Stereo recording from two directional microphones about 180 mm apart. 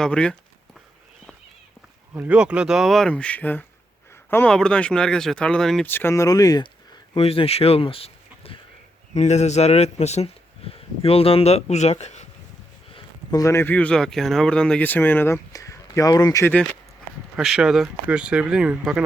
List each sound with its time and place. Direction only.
0.0 s speech: 5° left (ahead or behind)
2.1 s speech: 5° right (ahead or behind); by 6.7 s 20° left (ahead or behind)
7.1 s speech: 30° left (ahead or behind)
12.9 s a sound: 30° left (ahead or behind)
13.4 s speech: 15° left (ahead or behind)
17.3 s speech: 5° right (ahead or behind)